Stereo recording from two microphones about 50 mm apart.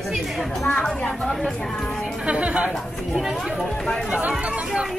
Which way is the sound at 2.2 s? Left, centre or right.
Right.